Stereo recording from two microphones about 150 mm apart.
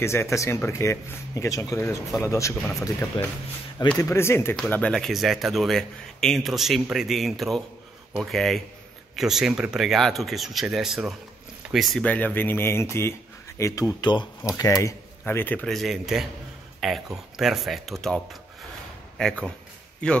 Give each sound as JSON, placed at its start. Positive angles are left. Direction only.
{"t": 0.0, "sound": "speech", "side_deg": 20}
{"t": 12.0, "sound": "speech", "side_deg": 10}